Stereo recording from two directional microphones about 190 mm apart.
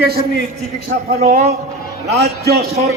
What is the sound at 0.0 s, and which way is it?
A man's voice, 55° right (ahead or behind).